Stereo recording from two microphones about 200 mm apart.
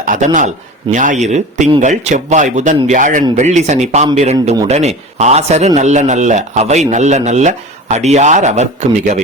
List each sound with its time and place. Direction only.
0.0 s a man's voice: 40° right (ahead or behind)